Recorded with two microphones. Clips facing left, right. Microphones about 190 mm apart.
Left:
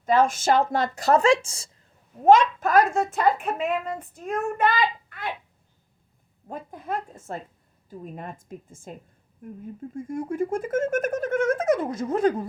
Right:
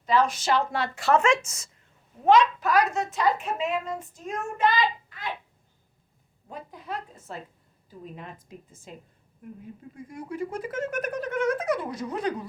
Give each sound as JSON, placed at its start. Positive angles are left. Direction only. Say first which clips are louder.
{"t": 0.0, "sound": "speech", "louder": "left 3 dB", "side_deg": 50}
{"t": 2.2, "sound": "a child's voice", "louder": "left 3 dB", "side_deg": 45}
{"t": 6.5, "sound": "speech", "louder": "left 5 dB", "side_deg": 50}